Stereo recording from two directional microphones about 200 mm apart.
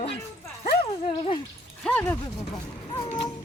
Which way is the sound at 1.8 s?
5° left (ahead or behind).